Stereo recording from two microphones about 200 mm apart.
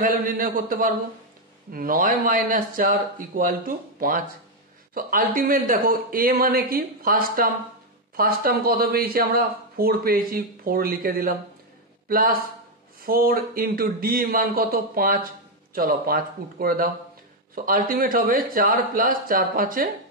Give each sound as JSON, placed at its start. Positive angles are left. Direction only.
{"t": 0.0, "sound": "speech", "side_deg": -45}